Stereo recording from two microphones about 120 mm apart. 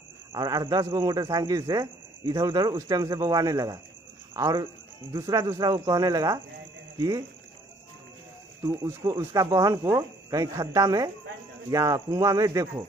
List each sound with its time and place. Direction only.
0.3 s speech: 35° right (ahead or behind)
8.6 s speech: 30° right (ahead or behind)